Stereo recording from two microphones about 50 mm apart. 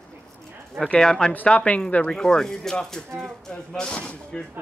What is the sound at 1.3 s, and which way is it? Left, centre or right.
Speech, left.